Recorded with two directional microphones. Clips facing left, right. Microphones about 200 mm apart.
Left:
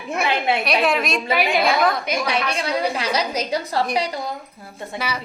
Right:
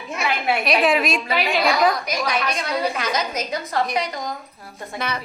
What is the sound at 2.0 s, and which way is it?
A woman's voice, 30° left (ahead or behind).